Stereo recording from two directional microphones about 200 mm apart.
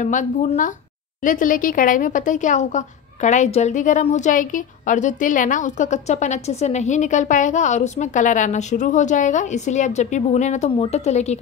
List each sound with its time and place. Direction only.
0.0 s a woman's voice: 40° left (ahead or behind)